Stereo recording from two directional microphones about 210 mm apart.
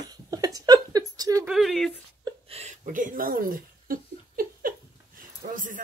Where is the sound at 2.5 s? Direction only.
35° right (ahead or behind).